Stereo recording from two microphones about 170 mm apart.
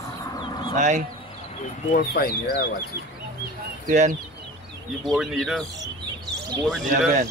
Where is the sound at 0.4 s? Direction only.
30° left (ahead or behind).